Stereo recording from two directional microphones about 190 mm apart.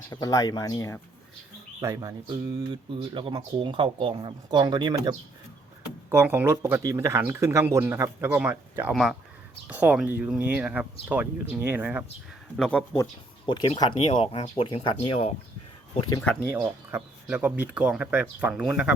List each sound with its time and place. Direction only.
0.1 s speech: 20° left (ahead or behind)
1.8 s speech: 15° right (ahead or behind)
6.1 s speech: 10° right (ahead or behind)
12.5 s speech: 5° left (ahead or behind)
13.4 s speech: 25° left (ahead or behind)
16.2 s speech: 5° left (ahead or behind)
16.5 s speech: 10° right (ahead or behind)